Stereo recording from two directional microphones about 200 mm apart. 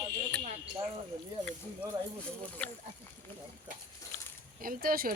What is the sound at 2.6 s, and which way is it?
Speech, 5° left (ahead or behind).